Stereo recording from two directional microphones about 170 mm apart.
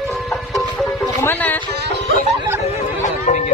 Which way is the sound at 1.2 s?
10° left (ahead or behind).